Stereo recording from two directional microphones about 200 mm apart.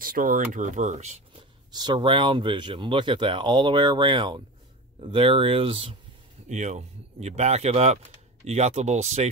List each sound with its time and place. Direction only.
0.0 s speech: 45° right (ahead or behind)
1.7 s speech: 20° right (ahead or behind)